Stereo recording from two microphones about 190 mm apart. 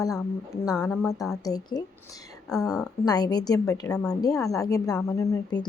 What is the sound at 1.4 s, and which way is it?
A woman's voice, 20° left (ahead or behind).